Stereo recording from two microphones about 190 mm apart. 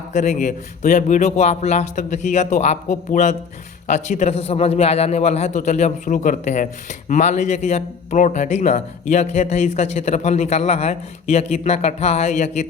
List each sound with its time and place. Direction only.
0.1 s a man's voice: 40° left (ahead or behind)